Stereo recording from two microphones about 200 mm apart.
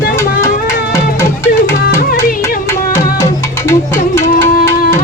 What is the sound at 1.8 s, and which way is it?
Music, 45° left (ahead or behind).